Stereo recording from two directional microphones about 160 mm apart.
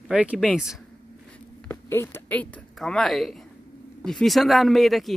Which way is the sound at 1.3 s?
10° left (ahead or behind).